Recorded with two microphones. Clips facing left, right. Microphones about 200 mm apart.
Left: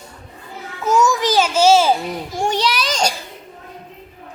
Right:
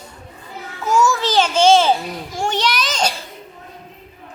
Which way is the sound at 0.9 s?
20° left (ahead or behind).